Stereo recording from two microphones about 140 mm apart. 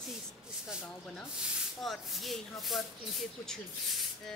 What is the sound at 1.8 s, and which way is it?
Speech, centre (ahead or behind).